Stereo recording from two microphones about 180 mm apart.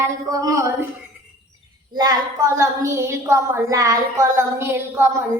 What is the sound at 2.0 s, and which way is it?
A woman's voice, 20° right (ahead or behind).